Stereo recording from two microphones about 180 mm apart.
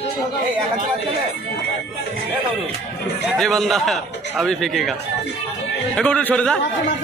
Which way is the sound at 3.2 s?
Centre (ahead or behind).